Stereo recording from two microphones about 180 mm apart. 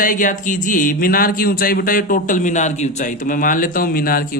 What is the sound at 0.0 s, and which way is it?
Speech, 50° left (ahead or behind).